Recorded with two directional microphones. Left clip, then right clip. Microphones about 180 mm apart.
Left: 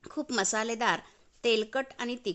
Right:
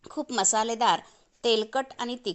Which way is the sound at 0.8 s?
10° left (ahead or behind).